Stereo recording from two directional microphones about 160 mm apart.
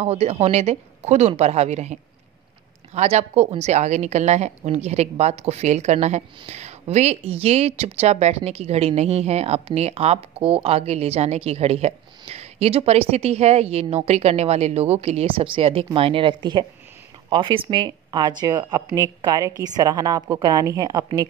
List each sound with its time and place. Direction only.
0.0 s a woman's voice: 40° right (ahead or behind); by 21.3 s 25° right (ahead or behind)